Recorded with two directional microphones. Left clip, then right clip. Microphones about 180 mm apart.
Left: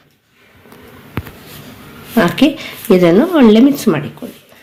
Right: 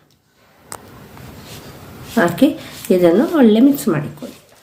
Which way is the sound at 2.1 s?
35° left (ahead or behind).